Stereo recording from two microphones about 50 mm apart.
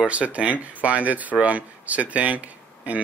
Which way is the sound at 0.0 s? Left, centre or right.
Right.